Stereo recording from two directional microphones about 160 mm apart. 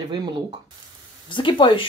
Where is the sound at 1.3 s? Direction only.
30° left (ahead or behind).